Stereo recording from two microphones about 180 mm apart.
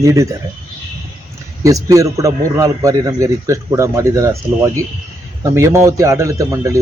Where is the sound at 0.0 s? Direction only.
15° right (ahead or behind).